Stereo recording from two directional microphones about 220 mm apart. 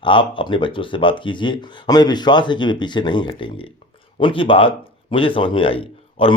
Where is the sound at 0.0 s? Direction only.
20° left (ahead or behind).